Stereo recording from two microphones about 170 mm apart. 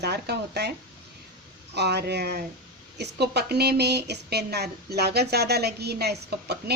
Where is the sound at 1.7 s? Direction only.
80° right.